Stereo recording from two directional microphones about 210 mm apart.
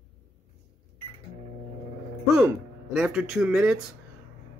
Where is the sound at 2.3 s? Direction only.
5° right (ahead or behind).